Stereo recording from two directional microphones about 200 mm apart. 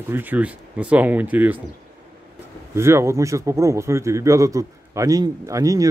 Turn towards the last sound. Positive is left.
turn(degrees=-15)  # may be behind; listen again after turning